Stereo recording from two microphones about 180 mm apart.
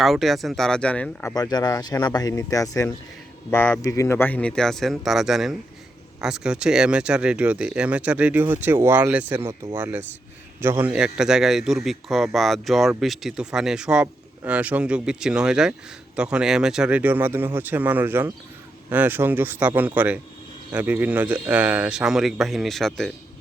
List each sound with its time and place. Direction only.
0.0 s speech: centre (ahead or behind)
1.4 s speech: 20° left (ahead or behind); by 23.1 s centre (ahead or behind)